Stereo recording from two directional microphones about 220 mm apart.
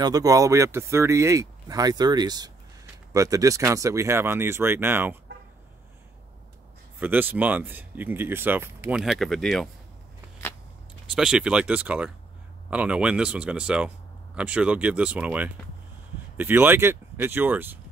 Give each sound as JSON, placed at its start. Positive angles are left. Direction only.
{"t": 0.0, "sound": "speech", "side_deg": -15}
{"t": 7.0, "sound": "speech", "side_deg": -10}
{"t": 11.1, "sound": "speech", "side_deg": -5}